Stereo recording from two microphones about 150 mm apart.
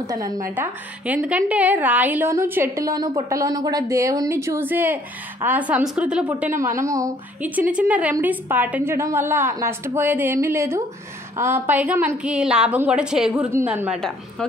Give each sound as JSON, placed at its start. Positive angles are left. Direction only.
{"t": 0.0, "sound": "speech", "side_deg": -25}
{"t": 1.0, "sound": "a woman's voice", "side_deg": -10}
{"t": 7.7, "sound": "a woman's voice", "side_deg": -10}